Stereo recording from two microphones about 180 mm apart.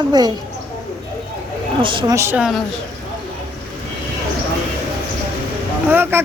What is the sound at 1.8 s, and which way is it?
Speech, 25° right (ahead or behind).